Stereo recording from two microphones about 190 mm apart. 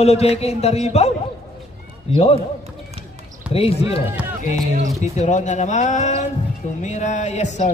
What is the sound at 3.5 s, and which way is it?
A man's voice, 30° left (ahead or behind).